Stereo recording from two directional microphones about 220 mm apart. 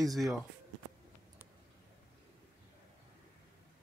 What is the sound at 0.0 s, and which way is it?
Speech, centre (ahead or behind).